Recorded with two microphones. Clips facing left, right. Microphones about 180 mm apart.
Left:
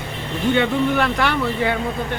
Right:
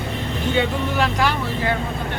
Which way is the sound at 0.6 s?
60° left (ahead or behind).